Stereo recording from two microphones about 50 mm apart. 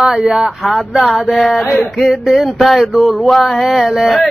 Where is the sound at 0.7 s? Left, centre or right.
Centre.